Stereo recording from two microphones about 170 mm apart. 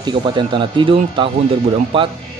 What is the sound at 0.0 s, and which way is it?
A man's voice, 30° right (ahead or behind).